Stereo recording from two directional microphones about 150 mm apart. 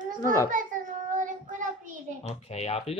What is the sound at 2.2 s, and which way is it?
Speech, 45° left (ahead or behind).